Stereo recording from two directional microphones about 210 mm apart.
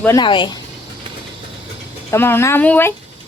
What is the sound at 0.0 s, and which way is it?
Speech, 15° left (ahead or behind).